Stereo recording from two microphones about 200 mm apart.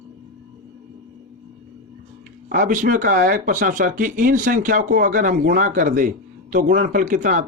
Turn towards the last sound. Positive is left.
turn(degrees=-40)  # may be behind; listen again after turning